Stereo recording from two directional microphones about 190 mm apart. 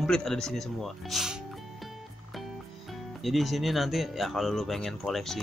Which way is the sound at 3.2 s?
Centre (ahead or behind).